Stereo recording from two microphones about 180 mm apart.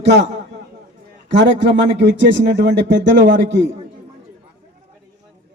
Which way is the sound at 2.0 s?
70° right (ahead or behind).